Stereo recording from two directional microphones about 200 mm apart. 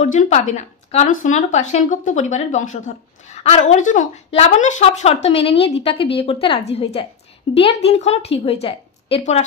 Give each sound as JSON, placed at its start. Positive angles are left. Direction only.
{"t": 0.0, "sound": "speech", "side_deg": 35}